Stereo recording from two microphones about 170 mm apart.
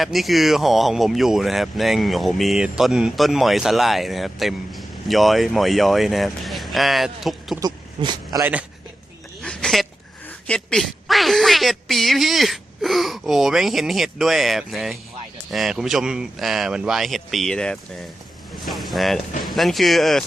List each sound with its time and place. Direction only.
0.0 s speech: centre (ahead or behind)
7.6 s speech: 25° right (ahead or behind)
9.4 s a sound: 5° left (ahead or behind)
10.2 s speech: 5° left (ahead or behind)